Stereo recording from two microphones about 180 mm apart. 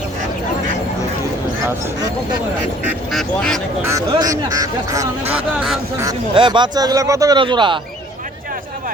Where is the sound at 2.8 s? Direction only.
Centre (ahead or behind).